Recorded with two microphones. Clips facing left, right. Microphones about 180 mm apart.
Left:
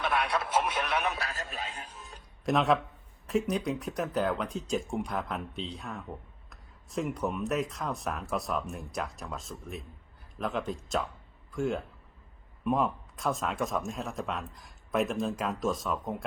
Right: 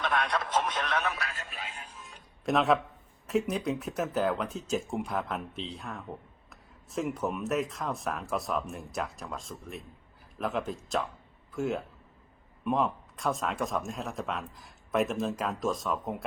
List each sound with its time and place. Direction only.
0.0 s speech: 10° left (ahead or behind)
1.1 s a man's voice: 35° left (ahead or behind)
2.4 s speech: centre (ahead or behind)